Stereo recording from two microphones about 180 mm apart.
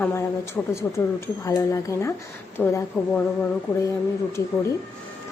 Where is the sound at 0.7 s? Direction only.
15° left (ahead or behind).